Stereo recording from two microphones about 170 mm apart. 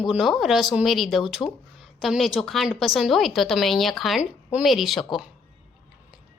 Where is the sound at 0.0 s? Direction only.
Centre (ahead or behind).